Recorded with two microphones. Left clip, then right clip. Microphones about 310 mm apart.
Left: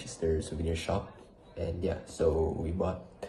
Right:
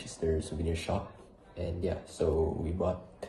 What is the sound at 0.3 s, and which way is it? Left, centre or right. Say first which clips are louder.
Speech: even; right.